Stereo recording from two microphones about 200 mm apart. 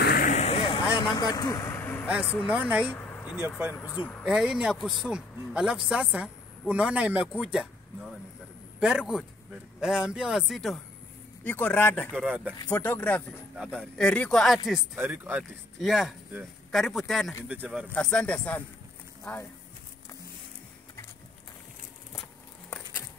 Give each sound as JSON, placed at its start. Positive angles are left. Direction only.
{"t": 0.0, "sound": "vehicle", "side_deg": 50}
{"t": 0.3, "sound": "vehicle", "side_deg": 30}
{"t": 2.4, "sound": "speech", "side_deg": -5}
{"t": 3.0, "sound": "a sound", "side_deg": 10}
{"t": 3.4, "sound": "speech", "side_deg": -10}
{"t": 3.7, "sound": "speech", "side_deg": 20}
{"t": 4.2, "sound": "speech", "side_deg": -5}
{"t": 12.6, "sound": "speech", "side_deg": 10}
{"t": 14.7, "sound": "speech", "side_deg": -10}